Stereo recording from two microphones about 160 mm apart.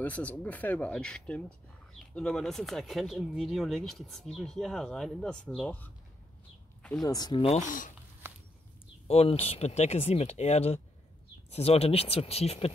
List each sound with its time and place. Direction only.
0.0 s speech: 10° left (ahead or behind)
6.8 s a sound: 5° left (ahead or behind)
7.1 s speech: 25° left (ahead or behind)
7.4 s speech: 50° left (ahead or behind)
8.2 s a sound: 15° right (ahead or behind)
9.0 s speech: 40° left (ahead or behind)